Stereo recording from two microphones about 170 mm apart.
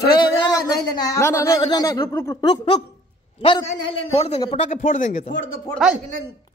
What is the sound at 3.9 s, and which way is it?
A man's voice, 35° left (ahead or behind).